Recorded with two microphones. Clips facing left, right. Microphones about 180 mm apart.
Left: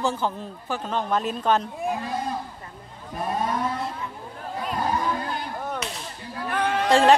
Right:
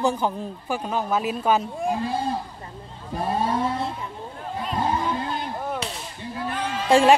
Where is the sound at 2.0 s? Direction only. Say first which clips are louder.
Right 3 dB; 30° right (ahead or behind).